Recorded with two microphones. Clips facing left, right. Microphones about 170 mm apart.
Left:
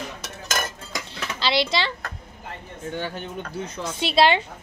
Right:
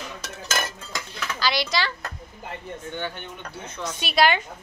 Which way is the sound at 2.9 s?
40° left (ahead or behind).